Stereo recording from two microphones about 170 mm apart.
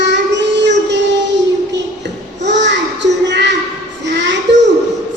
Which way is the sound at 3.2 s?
90° right.